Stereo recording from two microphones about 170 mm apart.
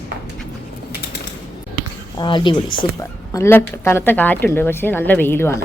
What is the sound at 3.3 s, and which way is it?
A woman's voice, 15° left (ahead or behind).